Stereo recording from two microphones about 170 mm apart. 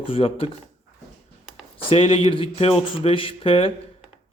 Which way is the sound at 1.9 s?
30° left (ahead or behind).